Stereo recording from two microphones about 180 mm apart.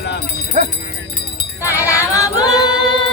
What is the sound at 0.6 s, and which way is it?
Speech, 45° right (ahead or behind).